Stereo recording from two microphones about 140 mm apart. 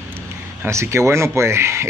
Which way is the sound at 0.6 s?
20° right (ahead or behind).